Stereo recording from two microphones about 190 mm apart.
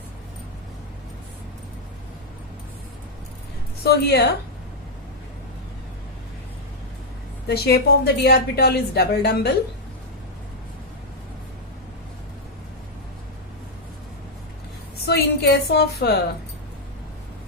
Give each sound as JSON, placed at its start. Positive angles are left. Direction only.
{"t": 3.8, "sound": "a woman's voice", "side_deg": 55}
{"t": 7.4, "sound": "a woman's voice", "side_deg": 55}
{"t": 15.0, "sound": "a woman's voice", "side_deg": 55}